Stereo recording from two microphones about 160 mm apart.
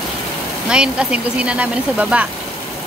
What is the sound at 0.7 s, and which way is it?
Speech, 5° right (ahead or behind).